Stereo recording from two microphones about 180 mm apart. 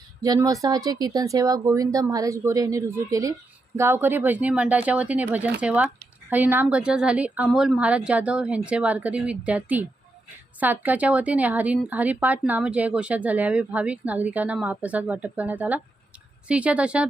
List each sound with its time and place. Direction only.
0.2 s speech: 20° right (ahead or behind)